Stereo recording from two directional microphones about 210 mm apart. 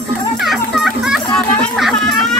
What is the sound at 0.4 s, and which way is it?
Children playing, centre (ahead or behind).